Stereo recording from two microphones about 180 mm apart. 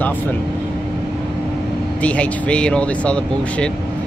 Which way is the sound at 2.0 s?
5° left (ahead or behind).